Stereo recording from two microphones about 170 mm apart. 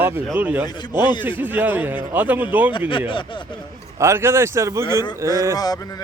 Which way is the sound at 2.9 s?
30° left (ahead or behind).